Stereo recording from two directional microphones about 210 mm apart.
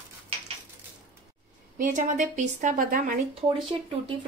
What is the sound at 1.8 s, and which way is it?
A woman's voice, 35° right (ahead or behind).